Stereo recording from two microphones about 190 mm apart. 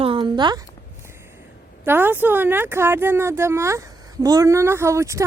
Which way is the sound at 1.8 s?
10° right (ahead or behind).